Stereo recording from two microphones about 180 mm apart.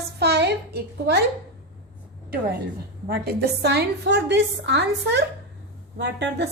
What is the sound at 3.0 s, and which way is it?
A woman's voice, 60° right (ahead or behind).